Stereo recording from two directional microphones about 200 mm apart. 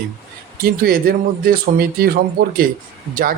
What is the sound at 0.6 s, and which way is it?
Speech, 45° right (ahead or behind).